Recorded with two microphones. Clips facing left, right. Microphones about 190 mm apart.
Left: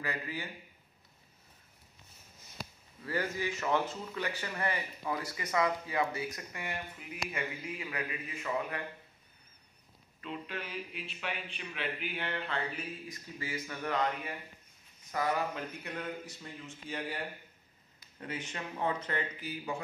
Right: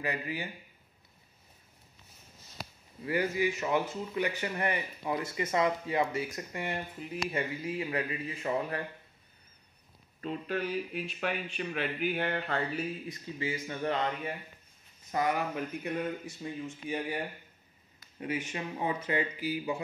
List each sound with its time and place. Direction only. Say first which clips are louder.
0.0 s speech: right 4 dB; 15° right (ahead or behind)
3.1 s speech: right 5 dB; 15° right (ahead or behind); by 8.8 s 35° right (ahead or behind)
10.2 s speech: right 7 dB; 40° right (ahead or behind)
13.1 s speech: right 5 dB; 25° right (ahead or behind)
18.2 s speech: right 5 dB; 15° right (ahead or behind)